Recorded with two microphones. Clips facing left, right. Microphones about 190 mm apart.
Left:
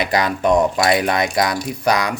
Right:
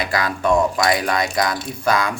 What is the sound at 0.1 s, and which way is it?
Speech, 20° left (ahead or behind).